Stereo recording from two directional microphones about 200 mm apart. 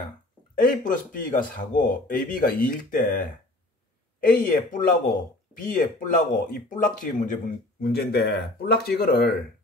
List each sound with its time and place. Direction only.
0.6 s speech: 40° left (ahead or behind)
4.4 s speech: 45° left (ahead or behind)
7.8 s speech: 55° left (ahead or behind)